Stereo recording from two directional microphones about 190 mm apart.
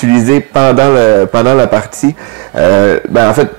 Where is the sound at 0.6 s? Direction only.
15° right (ahead or behind).